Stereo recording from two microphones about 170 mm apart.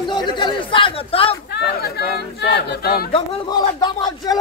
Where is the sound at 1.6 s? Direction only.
75° left (ahead or behind).